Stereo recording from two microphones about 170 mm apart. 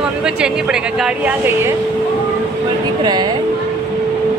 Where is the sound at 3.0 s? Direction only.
25° right (ahead or behind).